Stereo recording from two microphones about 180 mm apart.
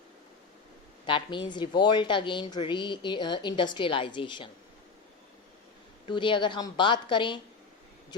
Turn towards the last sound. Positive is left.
turn(degrees=25)  # may be behind; listen again after turning